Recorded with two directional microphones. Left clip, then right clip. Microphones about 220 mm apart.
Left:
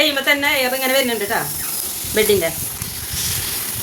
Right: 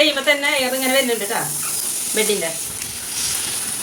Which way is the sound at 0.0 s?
45° left (ahead or behind).